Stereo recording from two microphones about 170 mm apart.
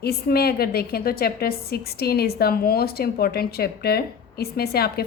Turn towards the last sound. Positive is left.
turn(degrees=65)  # may be behind; listen again after turning